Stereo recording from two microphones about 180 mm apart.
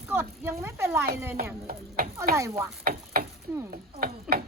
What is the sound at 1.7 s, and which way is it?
Speech, 55° right (ahead or behind).